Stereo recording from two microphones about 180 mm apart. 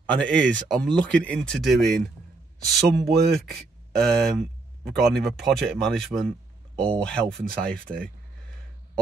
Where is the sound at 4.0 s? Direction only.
Centre (ahead or behind).